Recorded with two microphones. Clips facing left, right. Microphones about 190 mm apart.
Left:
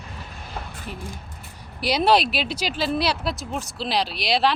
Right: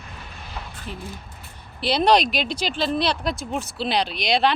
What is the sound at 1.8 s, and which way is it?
Speech, 10° left (ahead or behind).